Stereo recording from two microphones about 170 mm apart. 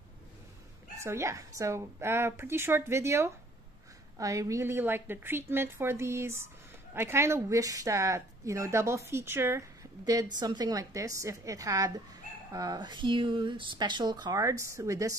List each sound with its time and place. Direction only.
0.9 s a woman's voice: 15° right (ahead or behind)